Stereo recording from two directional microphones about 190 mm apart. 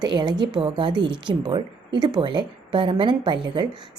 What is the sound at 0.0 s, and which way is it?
A woman's voice, 20° right (ahead or behind).